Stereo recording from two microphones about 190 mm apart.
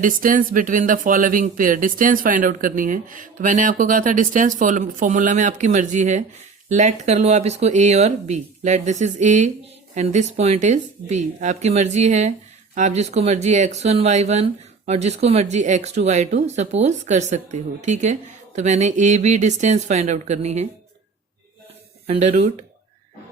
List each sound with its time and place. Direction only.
0.0 s speech: 45° right (ahead or behind)
22.0 s speech: 35° right (ahead or behind)